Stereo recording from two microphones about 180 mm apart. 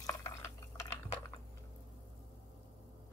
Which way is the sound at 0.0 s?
15° left (ahead or behind).